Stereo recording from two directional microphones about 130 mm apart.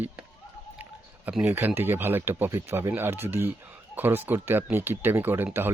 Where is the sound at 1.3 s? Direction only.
10° right (ahead or behind).